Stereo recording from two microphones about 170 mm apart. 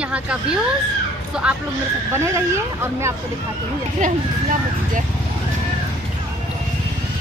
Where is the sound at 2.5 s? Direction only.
15° right (ahead or behind).